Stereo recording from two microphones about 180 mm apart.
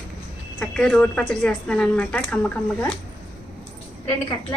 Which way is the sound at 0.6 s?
5° left (ahead or behind).